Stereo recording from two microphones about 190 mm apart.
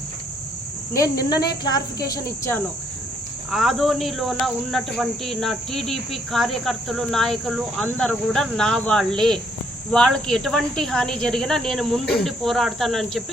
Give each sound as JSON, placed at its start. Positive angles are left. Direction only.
{"t": 1.5, "sound": "speech", "side_deg": 20}
{"t": 2.0, "sound": "cricket", "side_deg": 15}
{"t": 3.5, "sound": "speech", "side_deg": 0}